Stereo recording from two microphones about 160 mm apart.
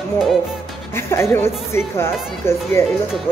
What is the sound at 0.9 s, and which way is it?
A woman's voice, 15° left (ahead or behind).